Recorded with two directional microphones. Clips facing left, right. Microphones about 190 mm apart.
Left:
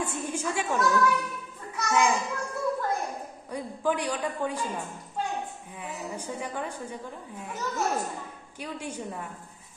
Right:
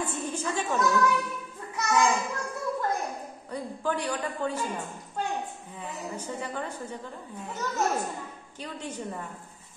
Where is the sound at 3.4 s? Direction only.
15° left (ahead or behind).